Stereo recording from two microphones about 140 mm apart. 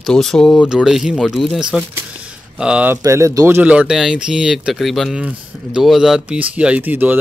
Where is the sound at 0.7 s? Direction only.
5° right (ahead or behind).